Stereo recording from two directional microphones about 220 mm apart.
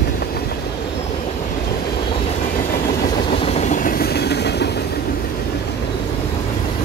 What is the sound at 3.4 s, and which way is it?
Train, 30° left (ahead or behind).